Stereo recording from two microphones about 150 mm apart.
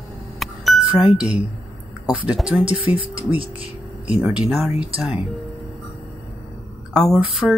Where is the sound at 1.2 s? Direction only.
5° right (ahead or behind).